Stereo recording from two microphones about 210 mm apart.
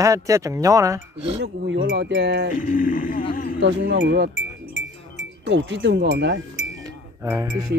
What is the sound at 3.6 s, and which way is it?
Speech, 55° right (ahead or behind).